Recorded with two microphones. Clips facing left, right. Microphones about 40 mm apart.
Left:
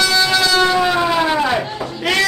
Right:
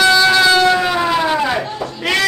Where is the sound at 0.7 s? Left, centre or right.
Centre.